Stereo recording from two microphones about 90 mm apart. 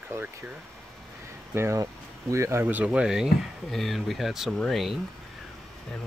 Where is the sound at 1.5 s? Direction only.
30° right (ahead or behind).